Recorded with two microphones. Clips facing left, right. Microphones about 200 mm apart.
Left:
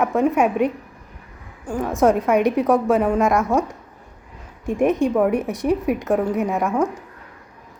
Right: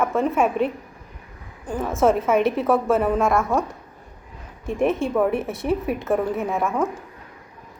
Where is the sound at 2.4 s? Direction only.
15° left (ahead or behind).